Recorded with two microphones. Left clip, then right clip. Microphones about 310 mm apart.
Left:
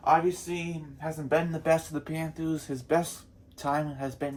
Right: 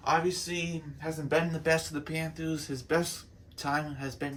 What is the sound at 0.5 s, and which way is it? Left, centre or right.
Speech, centre.